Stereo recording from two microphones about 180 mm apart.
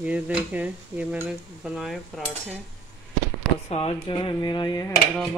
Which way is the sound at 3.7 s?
30° left (ahead or behind).